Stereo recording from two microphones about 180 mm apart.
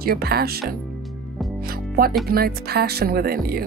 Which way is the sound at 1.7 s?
55° right (ahead or behind).